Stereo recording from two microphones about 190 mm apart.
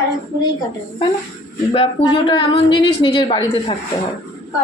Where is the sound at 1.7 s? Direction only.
25° left (ahead or behind).